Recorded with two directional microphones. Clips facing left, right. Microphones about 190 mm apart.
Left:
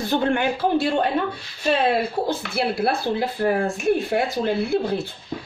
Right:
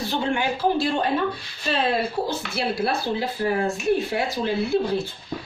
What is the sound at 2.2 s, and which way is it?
Speech, 55° left (ahead or behind).